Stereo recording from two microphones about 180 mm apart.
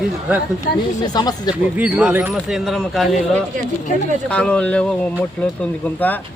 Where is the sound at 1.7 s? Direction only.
10° right (ahead or behind).